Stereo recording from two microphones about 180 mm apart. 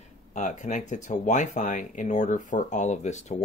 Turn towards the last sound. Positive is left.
turn(degrees=40)  # may be behind; listen again after turning